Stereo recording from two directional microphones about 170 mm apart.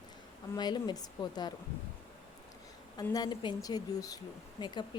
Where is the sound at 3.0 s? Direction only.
20° left (ahead or behind).